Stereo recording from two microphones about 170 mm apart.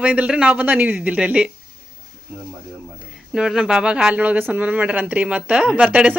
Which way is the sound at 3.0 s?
5° right (ahead or behind).